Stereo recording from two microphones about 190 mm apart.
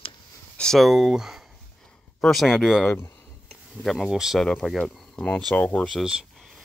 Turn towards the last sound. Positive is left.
turn(degrees=0)  # may be behind; listen again after turning